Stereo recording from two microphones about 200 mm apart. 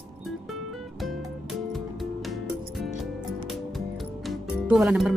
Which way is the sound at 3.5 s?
Centre (ahead or behind).